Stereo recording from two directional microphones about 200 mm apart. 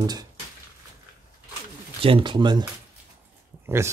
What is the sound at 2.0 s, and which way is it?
Speech, 25° right (ahead or behind).